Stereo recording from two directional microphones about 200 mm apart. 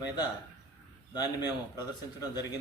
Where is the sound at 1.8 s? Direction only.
20° left (ahead or behind).